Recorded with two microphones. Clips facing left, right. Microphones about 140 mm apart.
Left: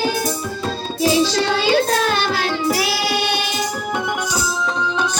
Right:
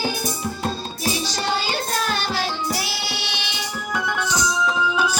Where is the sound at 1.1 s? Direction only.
90° left; by 3.8 s 45° left (ahead or behind).